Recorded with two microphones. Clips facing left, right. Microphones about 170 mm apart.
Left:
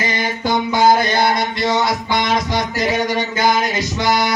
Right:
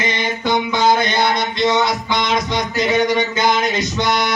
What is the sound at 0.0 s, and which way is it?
Music, 20° right (ahead or behind).